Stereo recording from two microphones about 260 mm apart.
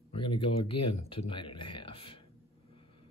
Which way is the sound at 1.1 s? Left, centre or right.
Centre.